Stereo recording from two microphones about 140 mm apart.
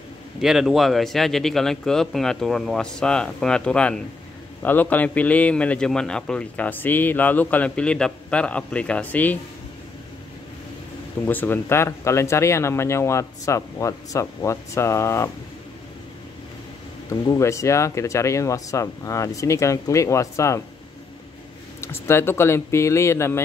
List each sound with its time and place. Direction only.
0.4 s a man's voice: 5° right (ahead or behind)
11.2 s speech: 15° left (ahead or behind)
17.1 s speech: 20° left (ahead or behind)
21.8 s speech: 15° left (ahead or behind)